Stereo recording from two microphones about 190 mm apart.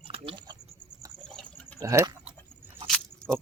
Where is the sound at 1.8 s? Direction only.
15° right (ahead or behind).